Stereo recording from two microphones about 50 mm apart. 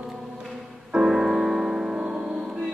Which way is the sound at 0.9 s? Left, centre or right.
Centre.